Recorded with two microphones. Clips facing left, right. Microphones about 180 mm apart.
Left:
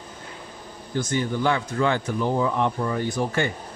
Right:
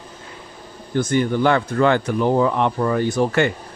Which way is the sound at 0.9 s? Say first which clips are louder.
Right 6 dB; 60° right (ahead or behind).